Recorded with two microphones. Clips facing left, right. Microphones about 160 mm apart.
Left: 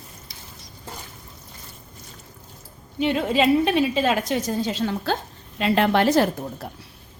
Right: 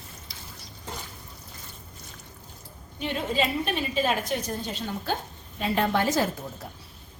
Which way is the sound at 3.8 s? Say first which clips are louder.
Left 5 dB; 90° left.